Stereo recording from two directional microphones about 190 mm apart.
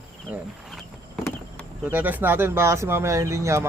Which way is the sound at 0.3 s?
Centre (ahead or behind).